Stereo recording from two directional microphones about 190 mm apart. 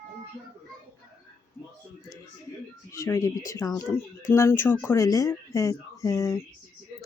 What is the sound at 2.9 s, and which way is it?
Speech, 15° left (ahead or behind).